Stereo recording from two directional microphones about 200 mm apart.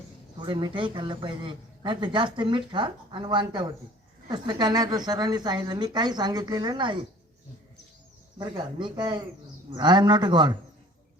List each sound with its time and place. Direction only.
0.4 s a man's voice: 20° right (ahead or behind)
8.4 s a man's voice: 25° right (ahead or behind)